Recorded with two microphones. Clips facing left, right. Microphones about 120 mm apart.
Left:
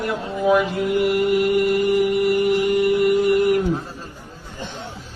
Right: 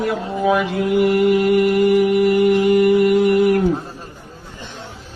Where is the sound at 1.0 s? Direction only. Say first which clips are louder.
Right 4 dB; 90° right.